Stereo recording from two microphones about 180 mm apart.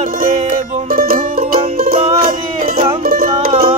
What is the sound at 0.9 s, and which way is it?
Music, 50° right (ahead or behind).